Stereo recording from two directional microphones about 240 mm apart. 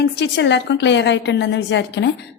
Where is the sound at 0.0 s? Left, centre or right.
Left.